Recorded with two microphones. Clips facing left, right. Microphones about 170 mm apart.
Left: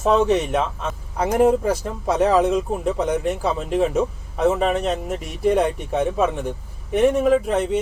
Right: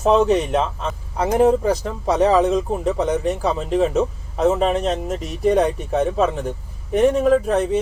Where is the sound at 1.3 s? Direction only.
30° right (ahead or behind).